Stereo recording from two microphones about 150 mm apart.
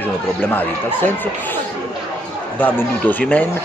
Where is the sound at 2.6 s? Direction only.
10° left (ahead or behind).